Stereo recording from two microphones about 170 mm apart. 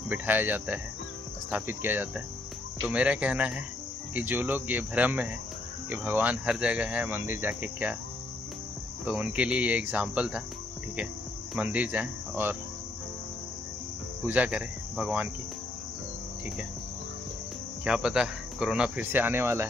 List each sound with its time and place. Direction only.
0.1 s speech: 10° right (ahead or behind)
9.0 s speech: 10° right (ahead or behind)
11.5 s speech: 10° right (ahead or behind)
14.2 s speech: 10° right (ahead or behind)
17.8 s speech: 5° right (ahead or behind)